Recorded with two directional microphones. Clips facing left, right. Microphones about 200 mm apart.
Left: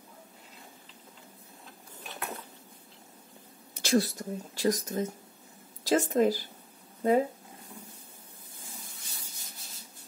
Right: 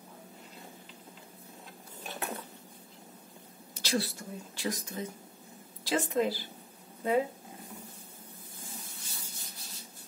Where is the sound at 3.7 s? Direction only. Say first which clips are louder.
Left 6 dB; 50° left (ahead or behind).